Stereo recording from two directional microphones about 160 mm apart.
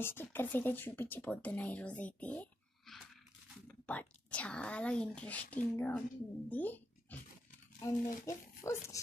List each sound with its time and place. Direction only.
0.0 s speech: 15° left (ahead or behind)